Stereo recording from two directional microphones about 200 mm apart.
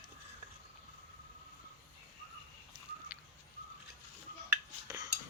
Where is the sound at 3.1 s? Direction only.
5° right (ahead or behind).